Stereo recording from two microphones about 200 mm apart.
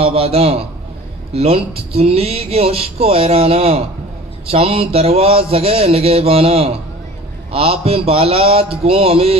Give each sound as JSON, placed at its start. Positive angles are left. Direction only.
{"t": 0.0, "sound": "speech", "side_deg": -30}